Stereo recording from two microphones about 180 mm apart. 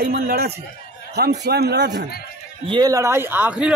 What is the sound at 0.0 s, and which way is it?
A man's voice, 55° right (ahead or behind).